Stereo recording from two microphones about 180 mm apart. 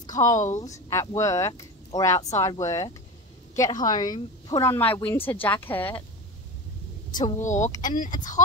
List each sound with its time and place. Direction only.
0.0 s a woman's voice: 20° left (ahead or behind)
7.3 s speech: 40° left (ahead or behind)